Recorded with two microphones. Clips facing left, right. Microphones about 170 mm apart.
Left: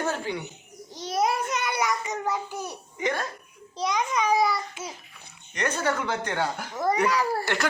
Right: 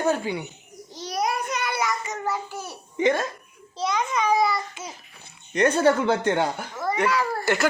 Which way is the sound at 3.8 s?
15° left (ahead or behind).